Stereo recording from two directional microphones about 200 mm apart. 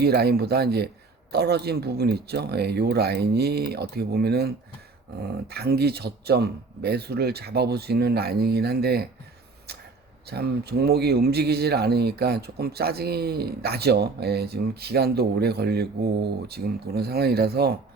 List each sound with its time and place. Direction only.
0.0 s a man's voice: 50° right (ahead or behind)
10.2 s a man's voice: 55° right (ahead or behind)